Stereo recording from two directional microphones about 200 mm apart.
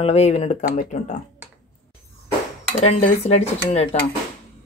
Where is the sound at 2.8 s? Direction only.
35° left (ahead or behind).